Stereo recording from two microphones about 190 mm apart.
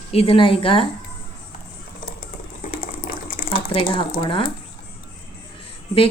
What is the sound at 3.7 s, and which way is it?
Speech, 30° left (ahead or behind).